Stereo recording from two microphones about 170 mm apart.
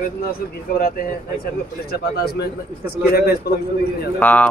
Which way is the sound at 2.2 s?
70° left (ahead or behind).